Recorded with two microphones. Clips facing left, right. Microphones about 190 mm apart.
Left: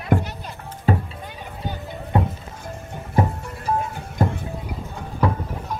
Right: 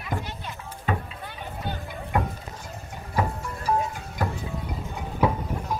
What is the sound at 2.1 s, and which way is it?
Music, 25° left (ahead or behind).